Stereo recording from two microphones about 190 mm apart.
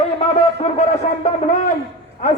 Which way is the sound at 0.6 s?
40° left (ahead or behind).